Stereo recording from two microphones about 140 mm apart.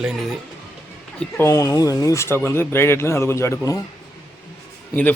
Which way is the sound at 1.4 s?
20° left (ahead or behind).